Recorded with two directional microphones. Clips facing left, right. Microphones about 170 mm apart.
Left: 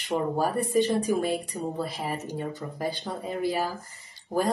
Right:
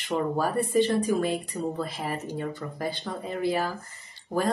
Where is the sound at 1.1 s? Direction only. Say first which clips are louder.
Even; 10° left (ahead or behind).